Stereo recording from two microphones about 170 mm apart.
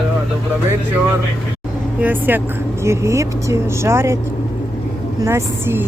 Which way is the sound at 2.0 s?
10° right (ahead or behind).